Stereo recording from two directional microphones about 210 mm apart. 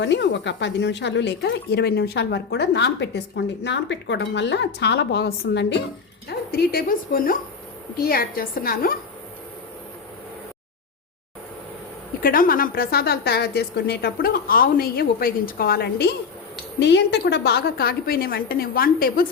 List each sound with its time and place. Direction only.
0.0 s a woman's voice: 55° left (ahead or behind)
12.2 s a woman's voice: 40° left (ahead or behind)